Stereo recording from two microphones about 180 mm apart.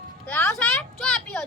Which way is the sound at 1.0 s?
5° left (ahead or behind).